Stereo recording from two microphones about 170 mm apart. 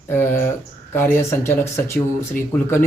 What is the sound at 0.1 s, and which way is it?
Speech, 10° left (ahead or behind).